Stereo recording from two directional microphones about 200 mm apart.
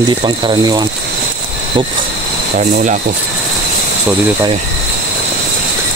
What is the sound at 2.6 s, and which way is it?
Speech, 35° right (ahead or behind).